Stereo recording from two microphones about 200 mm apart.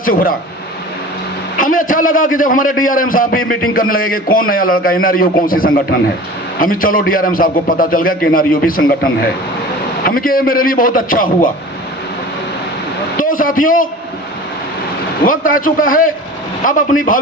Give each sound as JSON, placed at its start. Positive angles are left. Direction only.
{"t": 0.0, "sound": "a man's voice", "side_deg": 45}
{"t": 1.5, "sound": "a man's voice", "side_deg": 45}
{"t": 10.0, "sound": "a man's voice", "side_deg": 45}
{"t": 13.1, "sound": "speech", "side_deg": 45}
{"t": 15.3, "sound": "a man's voice", "side_deg": 45}